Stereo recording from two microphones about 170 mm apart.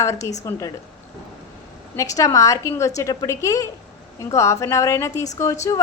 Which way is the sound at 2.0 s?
20° left (ahead or behind).